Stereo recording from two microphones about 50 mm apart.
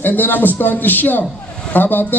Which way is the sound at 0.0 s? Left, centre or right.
Left.